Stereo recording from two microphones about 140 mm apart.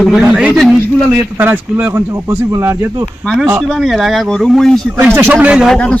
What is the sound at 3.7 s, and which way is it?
A man's voice, centre (ahead or behind).